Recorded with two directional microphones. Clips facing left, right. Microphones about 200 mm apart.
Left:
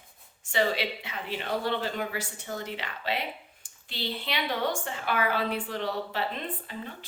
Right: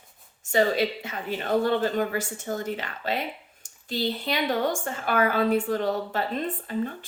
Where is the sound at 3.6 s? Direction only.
45° right (ahead or behind).